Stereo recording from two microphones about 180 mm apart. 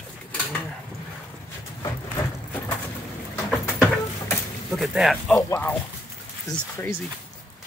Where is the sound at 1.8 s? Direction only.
15° left (ahead or behind).